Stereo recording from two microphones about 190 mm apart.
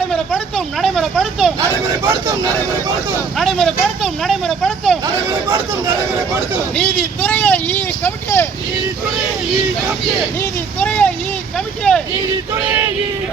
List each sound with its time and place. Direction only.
0.1 s a sound: 5° left (ahead or behind)
2.0 s speech: 15° right (ahead or behind)
3.3 s speech: centre (ahead or behind)
6.7 s speech: 5° left (ahead or behind)
10.4 s vehicle: 10° left (ahead or behind)
11.5 s speech: 5° left (ahead or behind)